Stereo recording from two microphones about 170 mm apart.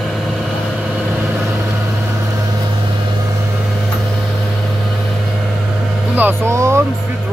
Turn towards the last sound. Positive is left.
turn(degrees=-15)  # may be behind; listen again after turning